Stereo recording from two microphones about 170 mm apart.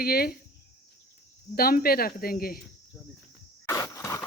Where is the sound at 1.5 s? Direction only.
60° left (ahead or behind).